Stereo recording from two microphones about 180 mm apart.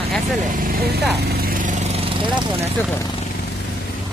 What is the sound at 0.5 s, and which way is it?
Speech, 55° right (ahead or behind).